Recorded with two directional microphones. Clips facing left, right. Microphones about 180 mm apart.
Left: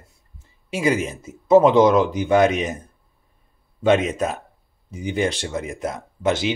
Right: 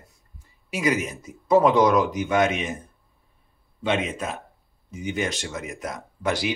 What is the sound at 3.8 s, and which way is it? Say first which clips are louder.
A man's voice: left 7 dB; 45° left (ahead or behind).